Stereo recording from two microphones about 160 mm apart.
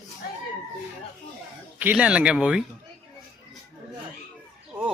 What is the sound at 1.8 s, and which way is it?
Speech, 10° right (ahead or behind).